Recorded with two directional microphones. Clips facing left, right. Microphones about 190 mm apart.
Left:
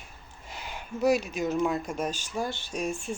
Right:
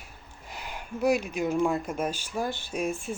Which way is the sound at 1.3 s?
10° right (ahead or behind).